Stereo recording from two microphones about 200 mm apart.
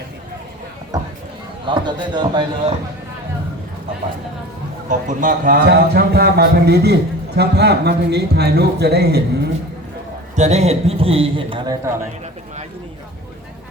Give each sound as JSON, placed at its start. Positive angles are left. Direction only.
{"t": 1.6, "sound": "a man's voice", "side_deg": -25}
{"t": 4.9, "sound": "a man's voice", "side_deg": -40}
{"t": 10.3, "sound": "a man's voice", "side_deg": -35}